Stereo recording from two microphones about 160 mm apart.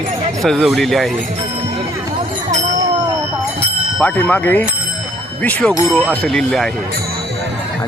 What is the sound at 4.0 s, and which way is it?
Speech, 10° left (ahead or behind).